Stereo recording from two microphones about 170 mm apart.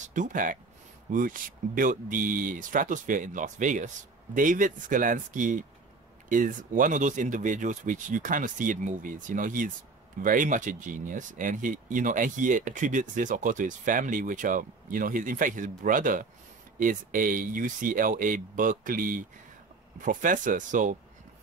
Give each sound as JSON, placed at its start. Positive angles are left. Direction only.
{"t": 0.0, "sound": "speech", "side_deg": -50}